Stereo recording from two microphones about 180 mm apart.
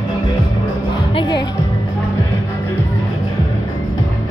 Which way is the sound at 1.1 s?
30° left (ahead or behind).